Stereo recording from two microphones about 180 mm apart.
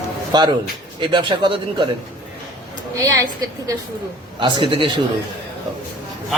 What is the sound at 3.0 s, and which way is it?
Speech, 20° right (ahead or behind).